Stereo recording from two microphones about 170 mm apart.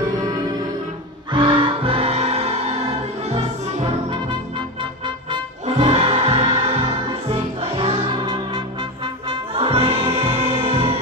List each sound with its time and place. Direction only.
1.3 s music: 30° right (ahead or behind)
5.7 s music: 40° right (ahead or behind)